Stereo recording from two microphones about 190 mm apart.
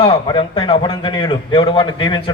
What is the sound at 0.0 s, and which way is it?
A man's voice, 25° left (ahead or behind).